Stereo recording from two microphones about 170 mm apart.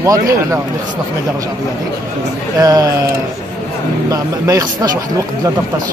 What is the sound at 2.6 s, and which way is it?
Speech, 20° right (ahead or behind).